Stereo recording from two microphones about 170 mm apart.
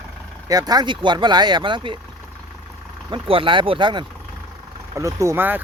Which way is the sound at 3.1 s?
30° right (ahead or behind).